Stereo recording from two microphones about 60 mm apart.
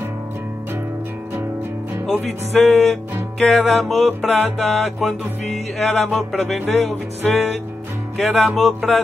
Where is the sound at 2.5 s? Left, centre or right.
Centre.